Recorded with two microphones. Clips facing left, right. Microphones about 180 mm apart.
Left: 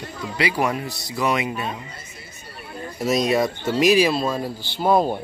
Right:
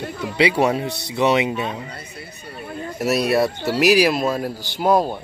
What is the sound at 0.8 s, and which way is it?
Speech, 65° right (ahead or behind).